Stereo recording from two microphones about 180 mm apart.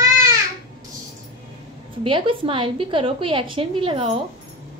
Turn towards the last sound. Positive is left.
turn(degrees=-30)  # may be behind; listen again after turning